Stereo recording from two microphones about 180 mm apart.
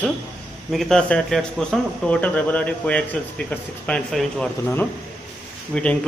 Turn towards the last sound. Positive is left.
turn(degrees=5)  # may be behind; listen again after turning